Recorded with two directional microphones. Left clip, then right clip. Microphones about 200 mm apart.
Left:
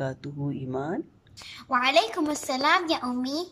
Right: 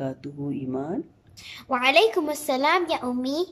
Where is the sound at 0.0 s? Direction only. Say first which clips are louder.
Right 1 dB; 5° right (ahead or behind).